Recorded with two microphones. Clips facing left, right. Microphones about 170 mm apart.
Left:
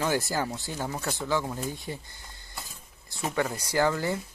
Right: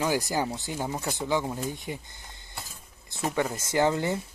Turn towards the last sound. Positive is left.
turn(degrees=-20)  # may be behind; listen again after turning